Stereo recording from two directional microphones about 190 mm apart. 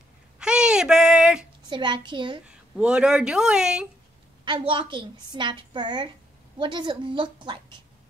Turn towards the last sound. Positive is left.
turn(degrees=-25)  # may be behind; listen again after turning